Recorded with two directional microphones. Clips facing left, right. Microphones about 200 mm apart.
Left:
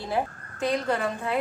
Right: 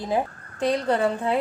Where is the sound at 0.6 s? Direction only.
30° right (ahead or behind).